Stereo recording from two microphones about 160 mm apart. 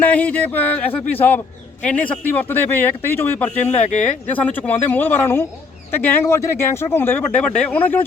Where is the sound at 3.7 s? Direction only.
45° left (ahead or behind).